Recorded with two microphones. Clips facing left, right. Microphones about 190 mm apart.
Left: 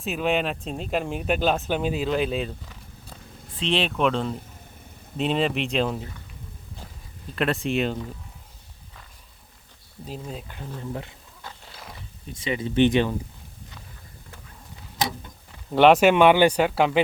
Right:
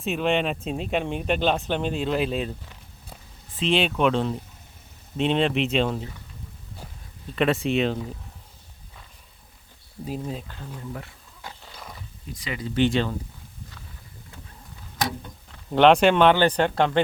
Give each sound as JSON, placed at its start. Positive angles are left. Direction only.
{"t": 0.0, "sound": "speech", "side_deg": 0}
{"t": 3.6, "sound": "speech", "side_deg": 0}
{"t": 7.3, "sound": "speech", "side_deg": 0}
{"t": 10.1, "sound": "speech", "side_deg": -5}
{"t": 12.4, "sound": "speech", "side_deg": 25}
{"t": 15.5, "sound": "speech", "side_deg": 5}